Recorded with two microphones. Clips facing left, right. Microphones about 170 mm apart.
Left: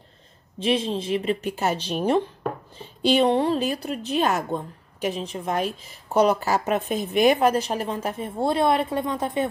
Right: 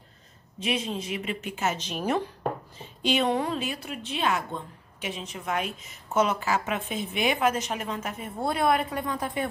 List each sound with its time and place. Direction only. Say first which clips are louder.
0.6 s a woman's voice: left 6 dB; 30° left (ahead or behind)